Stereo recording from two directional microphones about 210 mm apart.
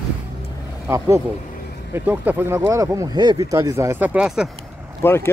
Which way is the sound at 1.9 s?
10° right (ahead or behind).